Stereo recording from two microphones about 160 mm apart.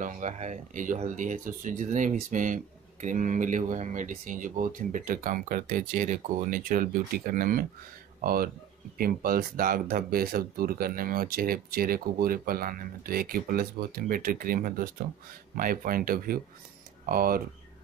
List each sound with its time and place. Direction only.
0.0 s speech: 50° right (ahead or behind)